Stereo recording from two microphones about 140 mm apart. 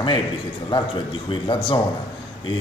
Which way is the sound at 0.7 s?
35° left (ahead or behind).